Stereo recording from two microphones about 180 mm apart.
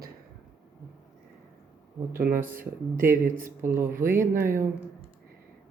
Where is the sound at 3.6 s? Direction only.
15° right (ahead or behind).